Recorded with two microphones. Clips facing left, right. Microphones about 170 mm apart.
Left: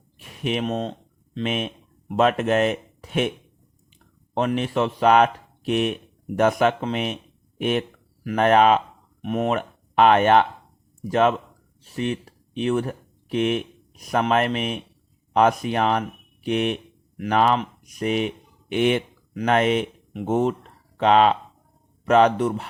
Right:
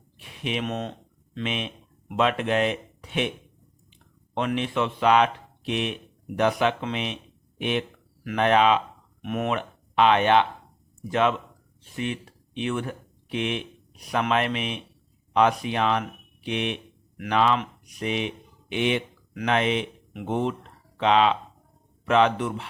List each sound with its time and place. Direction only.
0.2 s speech: 45° left (ahead or behind)
4.4 s speech: 40° left (ahead or behind)
9.2 s speech: 35° left (ahead or behind)